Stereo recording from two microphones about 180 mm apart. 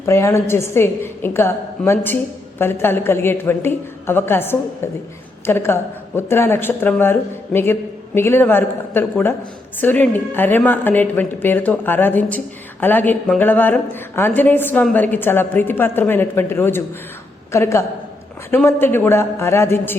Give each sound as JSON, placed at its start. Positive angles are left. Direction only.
{"t": 0.0, "sound": "a woman's voice", "side_deg": 15}